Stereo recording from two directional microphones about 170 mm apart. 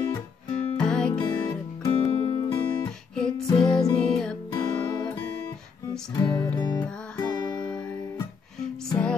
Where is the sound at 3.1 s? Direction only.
5° left (ahead or behind).